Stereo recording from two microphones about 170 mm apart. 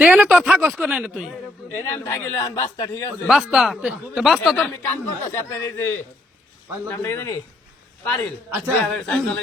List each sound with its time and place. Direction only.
0.0 s a woman's voice: 5° right (ahead or behind)
1.7 s a man's voice: 15° left (ahead or behind)
3.2 s a man's voice: centre (ahead or behind)
4.5 s a man's voice: 10° left (ahead or behind)